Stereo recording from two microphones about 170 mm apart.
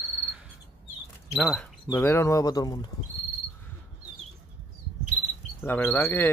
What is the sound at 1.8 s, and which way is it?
Speech, 15° left (ahead or behind).